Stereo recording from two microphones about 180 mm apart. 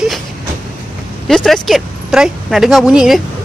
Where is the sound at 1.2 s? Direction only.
Centre (ahead or behind).